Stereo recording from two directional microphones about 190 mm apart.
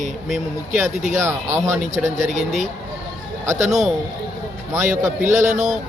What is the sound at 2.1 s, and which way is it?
Speech, 40° right (ahead or behind).